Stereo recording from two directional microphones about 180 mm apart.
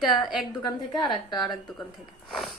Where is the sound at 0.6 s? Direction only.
20° left (ahead or behind).